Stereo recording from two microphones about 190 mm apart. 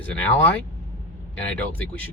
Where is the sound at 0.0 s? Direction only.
5° left (ahead or behind).